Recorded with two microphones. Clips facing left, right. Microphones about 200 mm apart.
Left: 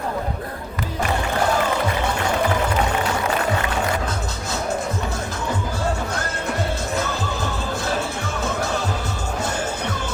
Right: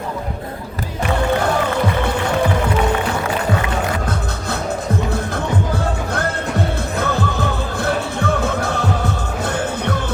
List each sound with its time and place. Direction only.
7.0 s music: 60° right (ahead or behind)